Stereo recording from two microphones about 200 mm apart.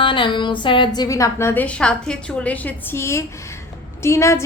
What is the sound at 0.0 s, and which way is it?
A woman's voice, 25° left (ahead or behind).